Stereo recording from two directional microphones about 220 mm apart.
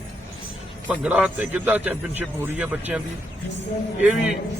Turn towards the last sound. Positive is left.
turn(degrees=0)  # may be behind; listen again after turning